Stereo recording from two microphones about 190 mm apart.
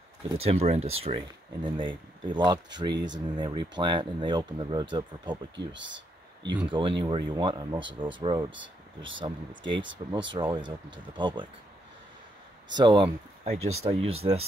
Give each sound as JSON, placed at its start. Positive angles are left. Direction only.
{"t": 0.4, "sound": "speech", "side_deg": -30}
{"t": 5.7, "sound": "a sound", "side_deg": -75}
{"t": 6.5, "sound": "speech", "side_deg": -25}
{"t": 8.5, "sound": "speech", "side_deg": -80}
{"t": 10.0, "sound": "speech", "side_deg": -30}
{"t": 12.7, "sound": "speech", "side_deg": -25}
{"t": 13.6, "sound": "speech", "side_deg": -90}
{"t": 13.8, "sound": "speech", "side_deg": -30}